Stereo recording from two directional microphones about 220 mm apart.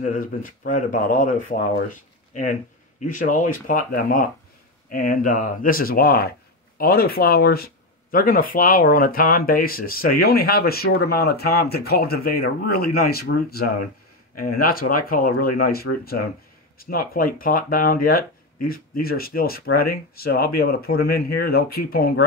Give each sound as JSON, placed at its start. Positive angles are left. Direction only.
{"t": 0.0, "sound": "speech", "side_deg": 35}